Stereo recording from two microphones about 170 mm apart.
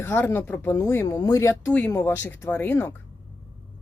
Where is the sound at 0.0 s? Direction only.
15° left (ahead or behind).